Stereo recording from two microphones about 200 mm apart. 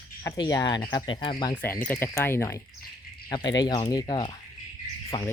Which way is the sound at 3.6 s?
20° left (ahead or behind).